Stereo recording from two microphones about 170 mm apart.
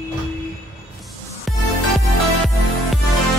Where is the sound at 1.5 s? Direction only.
Centre (ahead or behind).